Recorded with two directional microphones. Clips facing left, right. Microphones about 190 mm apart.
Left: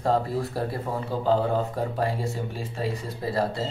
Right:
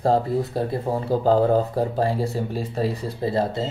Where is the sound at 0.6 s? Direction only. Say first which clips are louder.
Right 4 dB; 20° right (ahead or behind).